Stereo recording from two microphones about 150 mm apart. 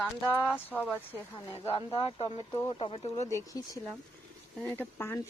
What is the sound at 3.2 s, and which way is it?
Speech, 20° left (ahead or behind).